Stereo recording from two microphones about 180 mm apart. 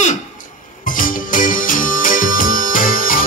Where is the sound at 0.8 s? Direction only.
50° left (ahead or behind).